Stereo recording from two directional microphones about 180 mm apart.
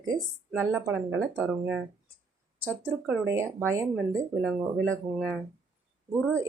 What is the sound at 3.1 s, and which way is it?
Speech, 15° right (ahead or behind).